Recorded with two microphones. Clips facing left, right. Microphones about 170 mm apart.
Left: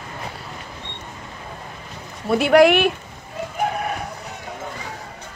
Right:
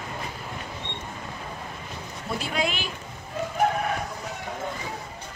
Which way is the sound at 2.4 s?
70° left (ahead or behind).